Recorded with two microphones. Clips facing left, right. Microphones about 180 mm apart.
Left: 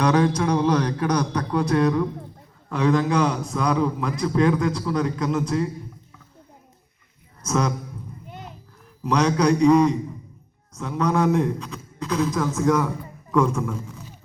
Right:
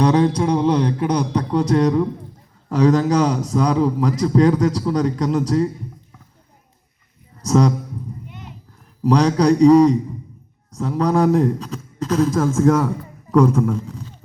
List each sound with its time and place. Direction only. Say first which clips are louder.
0.0 s a sound: right 3 dB; 30° right (ahead or behind)
1.5 s a man's voice: right 3 dB; 35° right (ahead or behind)
7.4 s a man's voice: right 7 dB; 35° right (ahead or behind)
8.3 s clip-clop: even; 35° left (ahead or behind)
9.0 s a man's voice: right 4 dB; 35° right (ahead or behind)